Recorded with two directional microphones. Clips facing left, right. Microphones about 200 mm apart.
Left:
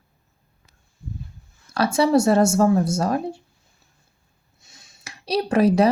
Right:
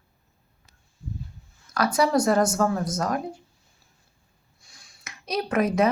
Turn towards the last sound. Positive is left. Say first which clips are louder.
# left 5 dB
turn(degrees=30)  # may be behind; listen again after turning